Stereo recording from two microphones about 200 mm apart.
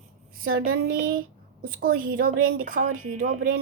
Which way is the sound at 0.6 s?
45° right (ahead or behind).